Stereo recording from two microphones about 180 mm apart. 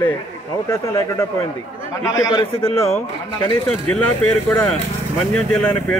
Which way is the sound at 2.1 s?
20° left (ahead or behind).